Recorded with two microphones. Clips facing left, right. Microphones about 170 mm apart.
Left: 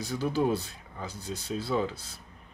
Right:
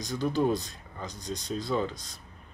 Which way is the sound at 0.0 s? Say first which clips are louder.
Right 1 dB; 5° left (ahead or behind).